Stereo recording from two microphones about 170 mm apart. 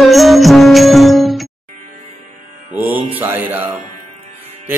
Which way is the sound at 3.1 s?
10° right (ahead or behind).